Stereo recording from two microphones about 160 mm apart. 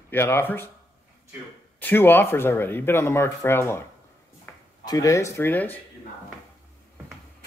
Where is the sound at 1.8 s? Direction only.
10° left (ahead or behind).